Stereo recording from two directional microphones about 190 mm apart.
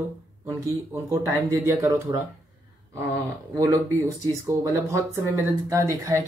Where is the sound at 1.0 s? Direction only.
15° right (ahead or behind).